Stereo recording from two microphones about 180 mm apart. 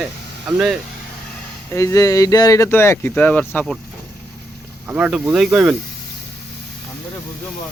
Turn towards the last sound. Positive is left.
turn(degrees=-5)  # may be behind; listen again after turning